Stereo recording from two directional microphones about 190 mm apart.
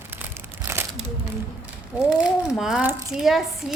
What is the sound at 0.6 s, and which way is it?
Crumpling, 10° right (ahead or behind).